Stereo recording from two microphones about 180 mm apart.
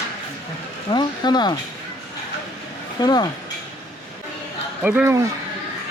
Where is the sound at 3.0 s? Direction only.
25° left (ahead or behind).